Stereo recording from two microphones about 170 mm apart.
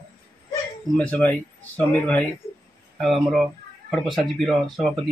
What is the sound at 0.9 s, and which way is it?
Speech, 10° left (ahead or behind).